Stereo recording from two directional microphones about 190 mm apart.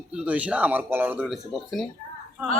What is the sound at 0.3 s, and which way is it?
A man's voice, 5° right (ahead or behind).